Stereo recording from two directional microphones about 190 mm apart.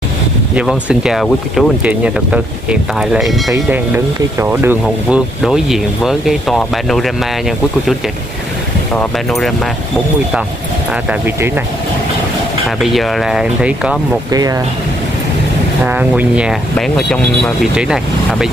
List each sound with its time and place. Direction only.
0.6 s speech: 5° right (ahead or behind)
3.5 s speech: 15° right (ahead or behind)
8.9 s speech: centre (ahead or behind)
11.1 s speech: 10° right (ahead or behind)
12.8 s speech: centre (ahead or behind)
15.8 s speech: 10° right (ahead or behind)